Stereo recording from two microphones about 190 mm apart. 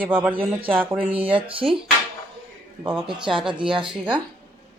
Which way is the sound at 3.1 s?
25° right (ahead or behind).